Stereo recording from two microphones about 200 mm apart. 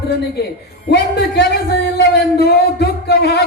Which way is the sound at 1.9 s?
55° left (ahead or behind).